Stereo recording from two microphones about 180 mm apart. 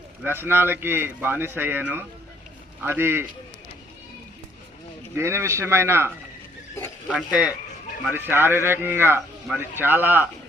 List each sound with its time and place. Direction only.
0.2 s speech: 10° right (ahead or behind)
5.1 s speech: 15° right (ahead or behind)